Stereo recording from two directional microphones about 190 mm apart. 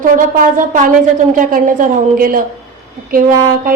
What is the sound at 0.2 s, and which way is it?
A woman's voice, 45° right (ahead or behind).